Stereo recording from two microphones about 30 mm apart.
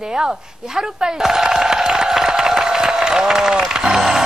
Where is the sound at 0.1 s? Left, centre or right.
Right.